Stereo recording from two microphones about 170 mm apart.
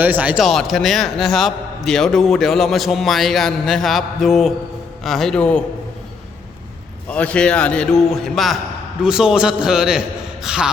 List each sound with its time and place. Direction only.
0.0 s a man's voice: 10° right (ahead or behind); by 5.6 s 5° left (ahead or behind)
7.1 s a man's voice: 5° left (ahead or behind)